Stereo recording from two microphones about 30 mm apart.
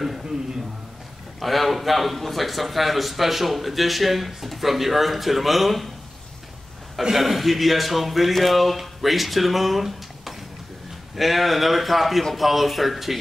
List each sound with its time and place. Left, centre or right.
1.4 s speech: centre
7.0 s speech: centre